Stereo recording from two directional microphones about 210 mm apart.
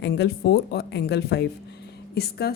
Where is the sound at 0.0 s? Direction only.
55° left (ahead or behind).